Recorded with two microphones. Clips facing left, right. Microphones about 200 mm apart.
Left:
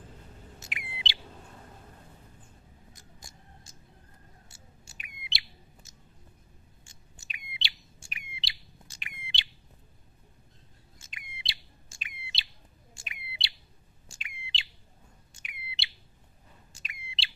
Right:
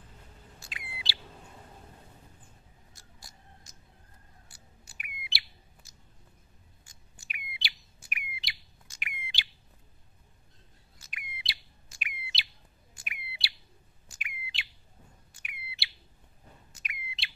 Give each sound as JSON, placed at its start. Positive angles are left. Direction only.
{"t": 0.6, "sound": "chirp", "side_deg": 20}
{"t": 2.9, "sound": "a sound", "side_deg": 20}
{"t": 4.5, "sound": "chirp", "side_deg": 25}
{"t": 6.8, "sound": "bird", "side_deg": 25}
{"t": 11.0, "sound": "bird", "side_deg": 25}